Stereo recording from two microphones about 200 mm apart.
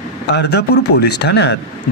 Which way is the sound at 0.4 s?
55° left (ahead or behind).